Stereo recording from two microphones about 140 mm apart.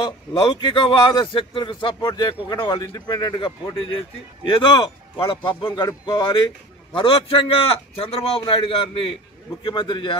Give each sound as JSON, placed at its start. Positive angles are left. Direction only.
{"t": 0.0, "sound": "speech", "side_deg": 35}